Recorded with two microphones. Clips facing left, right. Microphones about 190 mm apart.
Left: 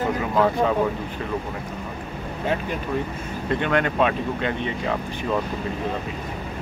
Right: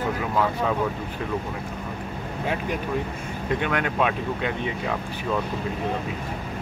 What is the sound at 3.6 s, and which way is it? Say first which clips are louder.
Speech: left 4 dB; 5° right (ahead or behind).